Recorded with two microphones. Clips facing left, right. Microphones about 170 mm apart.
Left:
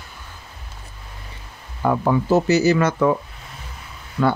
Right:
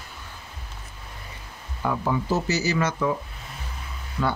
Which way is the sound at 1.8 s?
60° left (ahead or behind).